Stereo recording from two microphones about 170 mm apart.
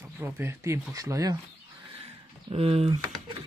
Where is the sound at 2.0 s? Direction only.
35° right (ahead or behind).